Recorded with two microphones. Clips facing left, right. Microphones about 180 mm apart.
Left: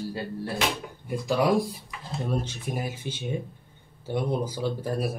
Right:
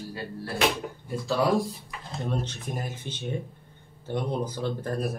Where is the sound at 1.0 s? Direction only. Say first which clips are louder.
Left 2 dB; 15° left (ahead or behind).